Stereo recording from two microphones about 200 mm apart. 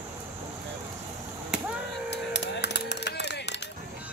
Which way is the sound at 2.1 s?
60° left (ahead or behind).